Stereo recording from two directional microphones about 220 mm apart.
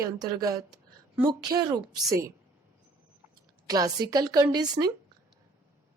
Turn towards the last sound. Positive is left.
turn(degrees=-20)  # may be behind; listen again after turning